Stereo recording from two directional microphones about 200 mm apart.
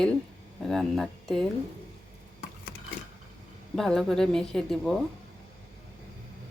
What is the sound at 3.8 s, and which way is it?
Speech, centre (ahead or behind).